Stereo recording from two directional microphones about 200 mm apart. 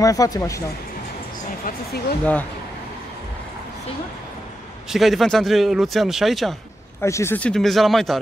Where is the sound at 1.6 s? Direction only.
50° left (ahead or behind).